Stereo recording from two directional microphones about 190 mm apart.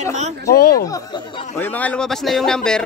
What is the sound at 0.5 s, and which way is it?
Speech, 55° left (ahead or behind).